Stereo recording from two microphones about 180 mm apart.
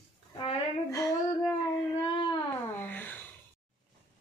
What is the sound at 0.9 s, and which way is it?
Speech, 15° left (ahead or behind).